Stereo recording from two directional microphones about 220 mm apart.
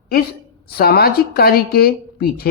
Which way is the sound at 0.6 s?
45° left (ahead or behind).